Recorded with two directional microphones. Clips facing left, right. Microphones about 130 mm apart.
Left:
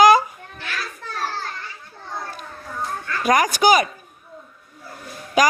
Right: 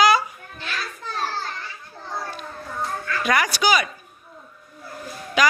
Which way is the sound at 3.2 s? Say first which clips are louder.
Left 5 dB; 40° left (ahead or behind).